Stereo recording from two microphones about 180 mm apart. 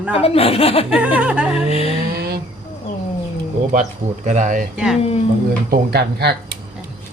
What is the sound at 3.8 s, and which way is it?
Speech, 40° right (ahead or behind).